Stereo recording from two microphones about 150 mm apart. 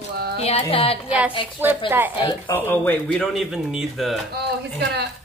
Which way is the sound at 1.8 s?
10° right (ahead or behind).